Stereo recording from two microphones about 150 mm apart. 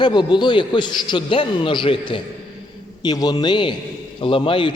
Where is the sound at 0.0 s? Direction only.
30° left (ahead or behind).